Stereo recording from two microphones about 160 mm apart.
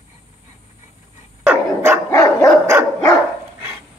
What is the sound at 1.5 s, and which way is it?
Dog, 15° right (ahead or behind).